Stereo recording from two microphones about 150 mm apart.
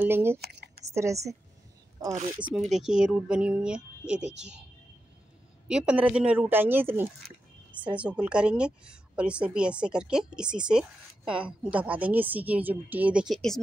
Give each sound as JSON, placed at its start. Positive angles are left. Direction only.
{"t": 0.0, "sound": "a woman's voice", "side_deg": -15}
{"t": 0.4, "sound": "speech", "side_deg": -90}
{"t": 2.1, "sound": "speech", "side_deg": -50}
{"t": 2.5, "sound": "speech", "side_deg": 0}
{"t": 5.7, "sound": "a woman's voice", "side_deg": -5}